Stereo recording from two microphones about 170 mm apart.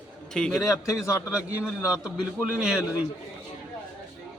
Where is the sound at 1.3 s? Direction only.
5° right (ahead or behind).